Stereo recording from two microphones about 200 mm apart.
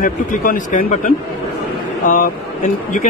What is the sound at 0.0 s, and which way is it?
A man's voice, 45° left (ahead or behind).